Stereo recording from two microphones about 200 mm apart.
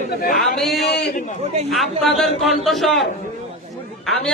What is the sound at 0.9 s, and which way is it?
Speech, 55° left (ahead or behind).